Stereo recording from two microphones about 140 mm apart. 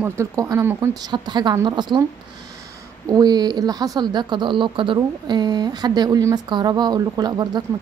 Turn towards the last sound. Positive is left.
turn(degrees=-30)  # may be behind; listen again after turning